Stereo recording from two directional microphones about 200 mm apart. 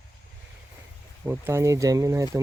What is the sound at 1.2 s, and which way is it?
Speech, 10° right (ahead or behind).